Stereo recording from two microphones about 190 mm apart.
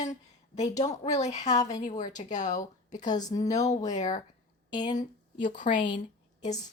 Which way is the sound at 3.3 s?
20° left (ahead or behind).